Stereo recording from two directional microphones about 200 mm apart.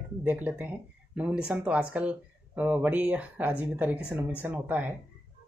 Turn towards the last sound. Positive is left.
turn(degrees=-10)  # may be behind; listen again after turning